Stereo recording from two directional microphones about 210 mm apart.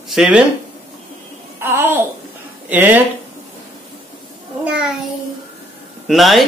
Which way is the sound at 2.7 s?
10° right (ahead or behind).